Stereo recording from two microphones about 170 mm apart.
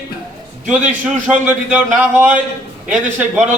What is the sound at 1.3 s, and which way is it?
A man's voice, 10° right (ahead or behind).